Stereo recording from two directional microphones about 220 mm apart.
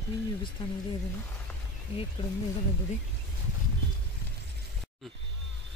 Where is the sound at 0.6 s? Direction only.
20° left (ahead or behind).